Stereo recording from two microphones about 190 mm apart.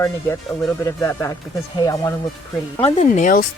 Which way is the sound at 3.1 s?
45° left (ahead or behind).